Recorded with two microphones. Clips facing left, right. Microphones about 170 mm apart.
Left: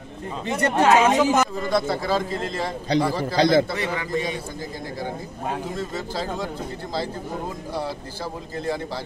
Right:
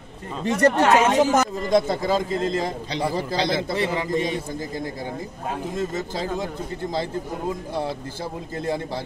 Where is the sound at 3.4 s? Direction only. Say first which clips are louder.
Left 8 dB; 45° left (ahead or behind).